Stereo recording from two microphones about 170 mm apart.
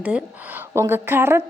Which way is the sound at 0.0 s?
5° right (ahead or behind).